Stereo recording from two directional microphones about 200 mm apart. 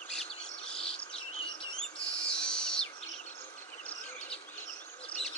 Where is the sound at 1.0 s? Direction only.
25° left (ahead or behind).